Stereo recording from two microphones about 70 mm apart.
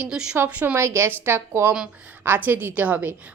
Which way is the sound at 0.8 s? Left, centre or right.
Right.